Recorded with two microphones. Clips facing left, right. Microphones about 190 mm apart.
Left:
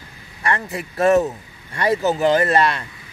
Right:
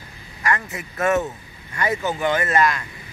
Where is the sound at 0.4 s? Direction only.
30° left (ahead or behind).